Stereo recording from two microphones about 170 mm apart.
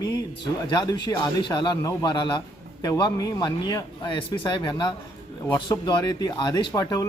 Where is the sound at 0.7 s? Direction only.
25° left (ahead or behind).